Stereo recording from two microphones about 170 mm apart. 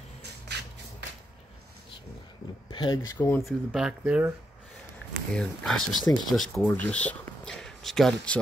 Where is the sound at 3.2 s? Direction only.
20° left (ahead or behind).